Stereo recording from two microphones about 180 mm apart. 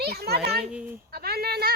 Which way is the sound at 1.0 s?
60° right (ahead or behind).